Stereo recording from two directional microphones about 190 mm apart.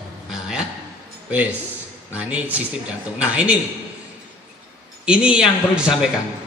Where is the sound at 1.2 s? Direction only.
5° right (ahead or behind).